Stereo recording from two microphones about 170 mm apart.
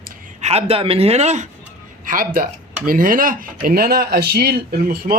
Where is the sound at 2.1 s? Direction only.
55° right (ahead or behind).